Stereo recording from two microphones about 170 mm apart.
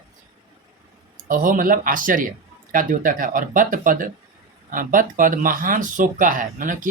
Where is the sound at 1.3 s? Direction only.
55° right (ahead or behind).